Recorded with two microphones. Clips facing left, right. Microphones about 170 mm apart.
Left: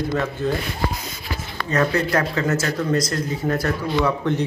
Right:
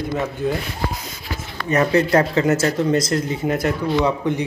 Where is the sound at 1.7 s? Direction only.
25° right (ahead or behind).